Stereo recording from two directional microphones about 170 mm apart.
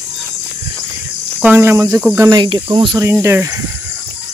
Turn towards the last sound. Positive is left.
turn(degrees=-15)  # may be behind; listen again after turning